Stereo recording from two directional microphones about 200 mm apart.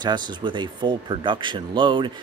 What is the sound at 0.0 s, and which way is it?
Speech, 20° right (ahead or behind).